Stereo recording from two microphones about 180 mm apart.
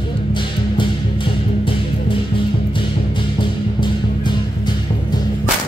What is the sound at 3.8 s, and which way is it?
Music, 25° left (ahead or behind).